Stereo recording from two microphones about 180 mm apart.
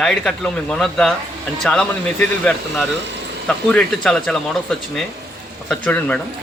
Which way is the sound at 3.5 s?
5° left (ahead or behind).